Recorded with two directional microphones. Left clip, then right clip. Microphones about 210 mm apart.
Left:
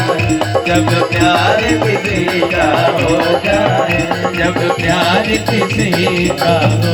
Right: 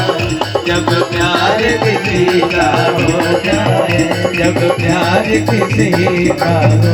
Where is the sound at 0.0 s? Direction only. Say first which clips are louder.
Left 1 dB; 40° left (ahead or behind).